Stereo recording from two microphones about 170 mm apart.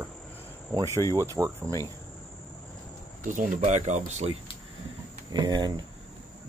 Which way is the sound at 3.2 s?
50° right (ahead or behind).